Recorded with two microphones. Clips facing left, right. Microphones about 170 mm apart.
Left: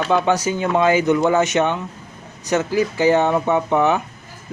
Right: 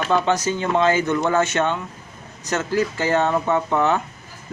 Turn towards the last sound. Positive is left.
turn(degrees=15)  # may be behind; listen again after turning